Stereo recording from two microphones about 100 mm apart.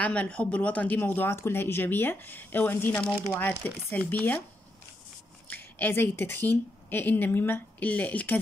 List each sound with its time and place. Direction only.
0.0 s speech: 15° left (ahead or behind)
5.5 s speech: 20° left (ahead or behind)